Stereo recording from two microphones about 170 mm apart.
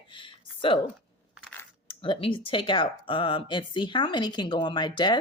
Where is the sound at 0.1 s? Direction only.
30° left (ahead or behind).